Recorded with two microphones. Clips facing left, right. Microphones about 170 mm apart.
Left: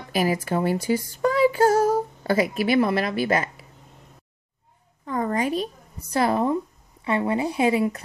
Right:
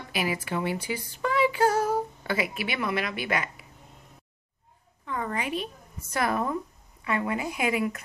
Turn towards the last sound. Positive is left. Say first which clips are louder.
# left 6 dB
turn(degrees=30)  # may be behind; listen again after turning